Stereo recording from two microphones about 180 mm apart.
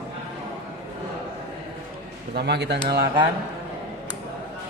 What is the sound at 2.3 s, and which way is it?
Speech, 65° right (ahead or behind).